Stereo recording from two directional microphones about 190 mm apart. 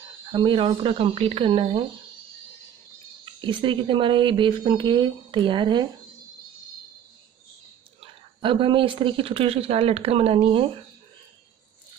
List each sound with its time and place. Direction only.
0.3 s speech: 25° right (ahead or behind)
3.3 s speech: 25° right (ahead or behind)
8.0 s speech: 25° right (ahead or behind)